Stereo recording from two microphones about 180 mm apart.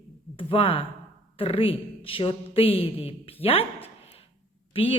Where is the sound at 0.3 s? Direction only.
30° left (ahead or behind).